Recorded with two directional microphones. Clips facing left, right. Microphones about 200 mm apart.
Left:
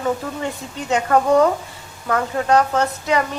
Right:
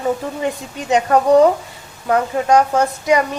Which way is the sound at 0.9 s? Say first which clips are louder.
Right 3 dB; 20° right (ahead or behind).